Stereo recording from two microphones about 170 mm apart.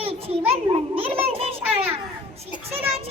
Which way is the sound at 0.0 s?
35° right (ahead or behind).